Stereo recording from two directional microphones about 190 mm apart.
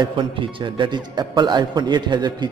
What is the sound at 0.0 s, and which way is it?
A man's voice, 25° right (ahead or behind).